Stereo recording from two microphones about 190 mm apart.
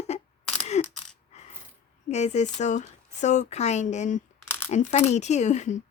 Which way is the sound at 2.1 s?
35° left (ahead or behind).